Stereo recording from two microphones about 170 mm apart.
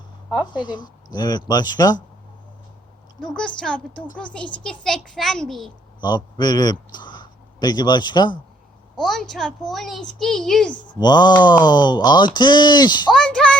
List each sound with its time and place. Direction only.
0.5 s speech: 25° left (ahead or behind)
3.2 s a woman's voice: 5° left (ahead or behind)
6.0 s a man's voice: 25° left (ahead or behind)
9.0 s a woman's voice: centre (ahead or behind)
10.8 s speech: 25° left (ahead or behind)
13.1 s a sound: 5° left (ahead or behind)